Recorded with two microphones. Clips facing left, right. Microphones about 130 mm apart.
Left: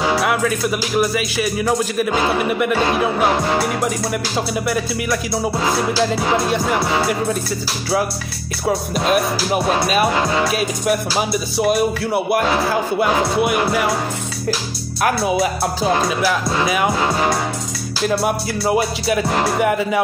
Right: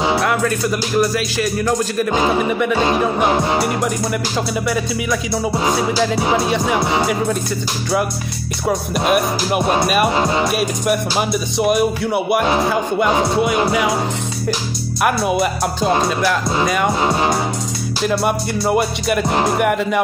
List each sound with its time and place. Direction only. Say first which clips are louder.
0.2 s music: even; 5° left (ahead or behind)
4.6 s music: right 1 dB; centre (ahead or behind)
8.6 s music: right 1 dB; 5° right (ahead or behind)
10.1 s music: right 1 dB; 20° right (ahead or behind)
10.5 s music: right 1 dB; centre (ahead or behind)
13.1 s speech: right 1 dB; 15° right (ahead or behind)
13.7 s music: right 1 dB; 5° right (ahead or behind)
15.0 s music: even; centre (ahead or behind)
17.0 s music: right 1 dB; 20° right (ahead or behind)
18.0 s music: even; centre (ahead or behind)
19.3 s speech: right 2 dB; 15° right (ahead or behind)
19.6 s music: right 1 dB; centre (ahead or behind)